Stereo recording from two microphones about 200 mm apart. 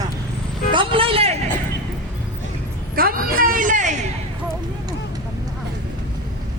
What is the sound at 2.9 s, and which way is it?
A woman's voice, 45° right (ahead or behind).